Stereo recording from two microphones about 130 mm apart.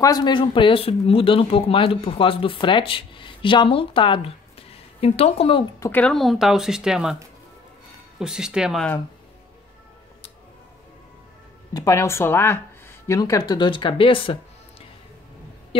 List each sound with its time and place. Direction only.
0.0 s speech: 30° left (ahead or behind); by 5.7 s 45° left (ahead or behind)
5.9 s speech: 10° left (ahead or behind)
6.1 s speech: centre (ahead or behind)
8.2 s speech: 5° right (ahead or behind)
11.7 s speech: 25° left (ahead or behind); by 14.4 s 40° left (ahead or behind)